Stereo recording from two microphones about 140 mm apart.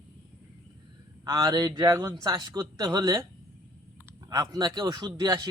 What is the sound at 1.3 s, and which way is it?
Speech, 30° right (ahead or behind).